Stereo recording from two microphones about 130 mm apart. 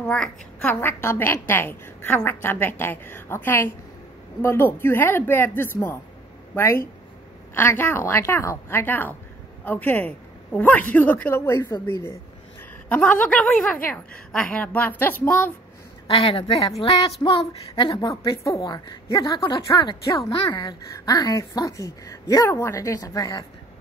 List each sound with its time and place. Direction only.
0.6 s a woman's voice: 15° left (ahead or behind)
12.8 s a woman's voice: 10° left (ahead or behind)
16.1 s a woman's voice: 45° left (ahead or behind)
17.4 s a woman's voice: 40° left (ahead or behind)